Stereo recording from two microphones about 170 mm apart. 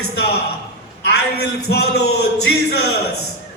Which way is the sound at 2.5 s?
70° left (ahead or behind).